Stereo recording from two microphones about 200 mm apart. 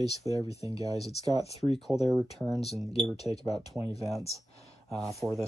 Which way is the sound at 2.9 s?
30° left (ahead or behind).